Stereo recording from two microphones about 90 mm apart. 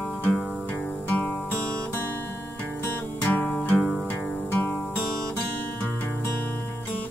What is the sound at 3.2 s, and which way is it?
Music, 10° left (ahead or behind).